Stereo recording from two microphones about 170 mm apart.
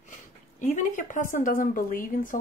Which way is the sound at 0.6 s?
45° left (ahead or behind).